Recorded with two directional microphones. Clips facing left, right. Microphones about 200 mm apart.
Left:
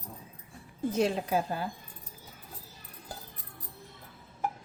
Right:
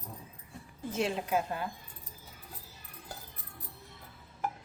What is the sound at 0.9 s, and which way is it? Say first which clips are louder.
Speech: left 3 dB; 35° left (ahead or behind).